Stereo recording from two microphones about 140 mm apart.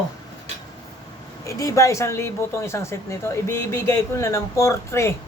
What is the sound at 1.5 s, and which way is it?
Speech, 20° left (ahead or behind).